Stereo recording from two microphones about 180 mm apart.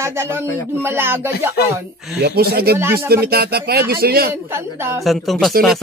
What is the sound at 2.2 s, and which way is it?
Speech, 60° right (ahead or behind).